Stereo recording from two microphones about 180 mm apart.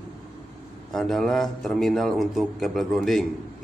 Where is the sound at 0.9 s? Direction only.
Centre (ahead or behind).